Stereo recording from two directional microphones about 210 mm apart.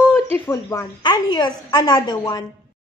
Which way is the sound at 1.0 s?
20° left (ahead or behind).